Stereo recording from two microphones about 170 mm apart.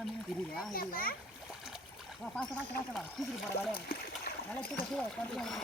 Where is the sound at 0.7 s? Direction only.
55° left (ahead or behind).